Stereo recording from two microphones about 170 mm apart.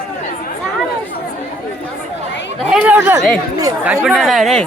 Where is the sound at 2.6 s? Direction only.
Centre (ahead or behind).